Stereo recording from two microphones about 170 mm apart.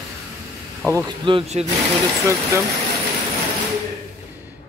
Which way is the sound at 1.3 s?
35° right (ahead or behind).